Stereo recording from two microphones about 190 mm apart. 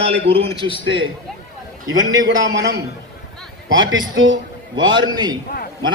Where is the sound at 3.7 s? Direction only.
80° right.